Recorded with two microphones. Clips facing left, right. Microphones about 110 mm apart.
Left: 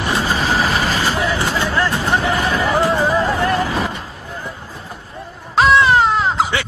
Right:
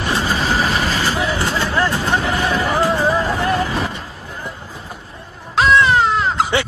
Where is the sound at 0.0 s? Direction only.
10° left (ahead or behind).